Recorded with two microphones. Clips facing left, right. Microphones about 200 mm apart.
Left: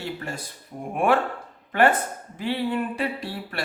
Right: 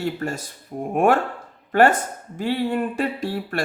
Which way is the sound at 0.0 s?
45° right (ahead or behind).